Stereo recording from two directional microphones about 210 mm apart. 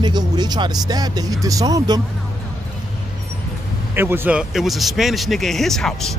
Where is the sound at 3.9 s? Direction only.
10° right (ahead or behind).